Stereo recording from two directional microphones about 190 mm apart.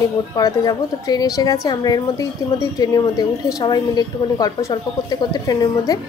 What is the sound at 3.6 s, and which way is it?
A woman's voice, 20° left (ahead or behind).